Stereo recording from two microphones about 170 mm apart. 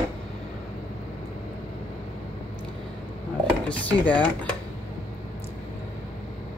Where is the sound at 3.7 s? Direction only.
10° left (ahead or behind).